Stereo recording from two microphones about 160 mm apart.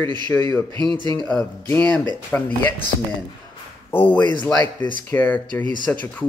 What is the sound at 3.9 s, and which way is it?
Speech, 10° left (ahead or behind).